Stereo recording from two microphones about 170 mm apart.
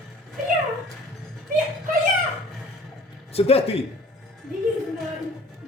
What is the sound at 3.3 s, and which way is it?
Speech, 35° left (ahead or behind).